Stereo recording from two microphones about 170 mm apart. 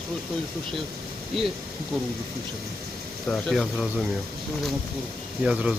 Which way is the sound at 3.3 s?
Centre (ahead or behind).